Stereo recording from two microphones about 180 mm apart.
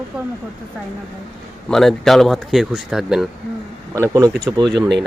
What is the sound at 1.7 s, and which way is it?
Speech, centre (ahead or behind).